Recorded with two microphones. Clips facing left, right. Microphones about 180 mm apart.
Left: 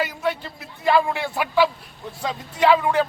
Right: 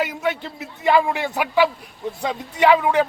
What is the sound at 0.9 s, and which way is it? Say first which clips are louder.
Speech: right 1 dB; 15° right (ahead or behind).